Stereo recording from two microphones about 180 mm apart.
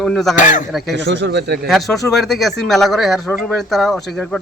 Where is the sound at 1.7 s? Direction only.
Centre (ahead or behind).